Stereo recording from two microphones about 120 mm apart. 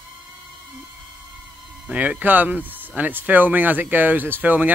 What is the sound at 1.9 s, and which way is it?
Speech, 10° right (ahead or behind).